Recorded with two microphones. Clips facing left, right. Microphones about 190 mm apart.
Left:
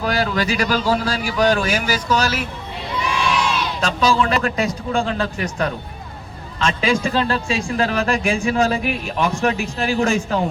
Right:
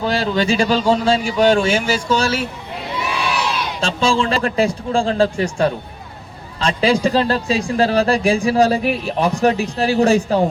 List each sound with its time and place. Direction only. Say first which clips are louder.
0.0 s speech: right 2 dB; 25° right (ahead or behind)
3.8 s speech: right 1 dB; 25° right (ahead or behind)